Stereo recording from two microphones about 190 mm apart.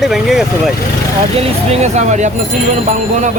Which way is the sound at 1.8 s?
40° right (ahead or behind).